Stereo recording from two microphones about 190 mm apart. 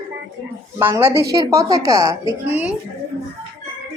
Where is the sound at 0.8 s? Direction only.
10° right (ahead or behind).